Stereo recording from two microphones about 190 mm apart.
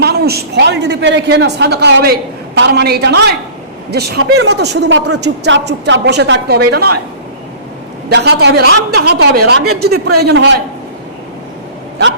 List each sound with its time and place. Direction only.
0.0 s a man's voice: 55° right (ahead or behind)
8.1 s a man's voice: 60° right (ahead or behind)